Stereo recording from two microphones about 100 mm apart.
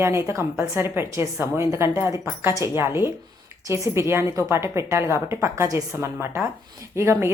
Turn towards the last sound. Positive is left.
turn(degrees=-30)  # may be behind; listen again after turning